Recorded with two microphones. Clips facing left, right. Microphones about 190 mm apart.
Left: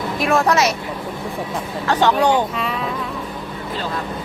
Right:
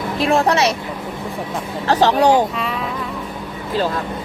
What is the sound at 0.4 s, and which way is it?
Speech, 30° right (ahead or behind).